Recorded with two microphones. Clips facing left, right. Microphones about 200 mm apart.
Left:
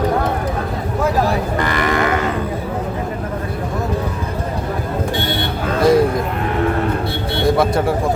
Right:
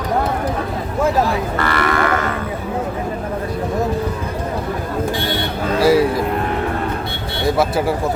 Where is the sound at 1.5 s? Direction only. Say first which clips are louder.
Left 1 dB; 15° left (ahead or behind).